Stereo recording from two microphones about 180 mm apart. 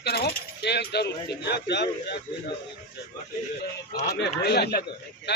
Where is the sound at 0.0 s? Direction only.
60° left (ahead or behind).